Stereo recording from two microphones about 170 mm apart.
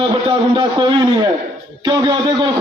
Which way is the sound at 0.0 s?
30° right (ahead or behind).